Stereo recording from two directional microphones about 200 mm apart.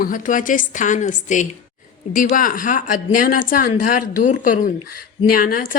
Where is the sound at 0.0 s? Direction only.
40° left (ahead or behind).